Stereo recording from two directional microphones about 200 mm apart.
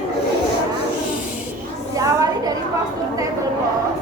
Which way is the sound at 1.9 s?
15° right (ahead or behind).